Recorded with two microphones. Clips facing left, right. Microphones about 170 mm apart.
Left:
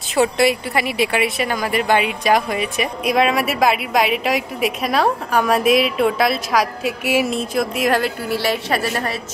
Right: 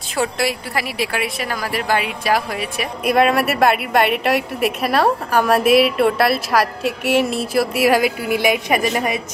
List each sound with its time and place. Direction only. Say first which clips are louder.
0.1 s speech: left 5 dB; centre (ahead or behind); by 9.2 s 15° right (ahead or behind)